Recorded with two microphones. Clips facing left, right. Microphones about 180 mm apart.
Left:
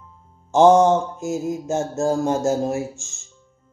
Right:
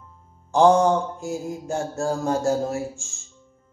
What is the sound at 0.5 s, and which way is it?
Speech, 20° left (ahead or behind).